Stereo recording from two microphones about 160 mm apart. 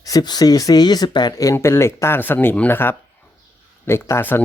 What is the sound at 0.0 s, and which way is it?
Speech, 25° left (ahead or behind).